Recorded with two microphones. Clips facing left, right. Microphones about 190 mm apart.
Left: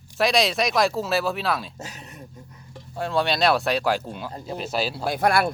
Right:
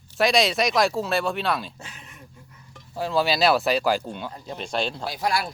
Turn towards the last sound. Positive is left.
turn(degrees=55)  # may be behind; listen again after turning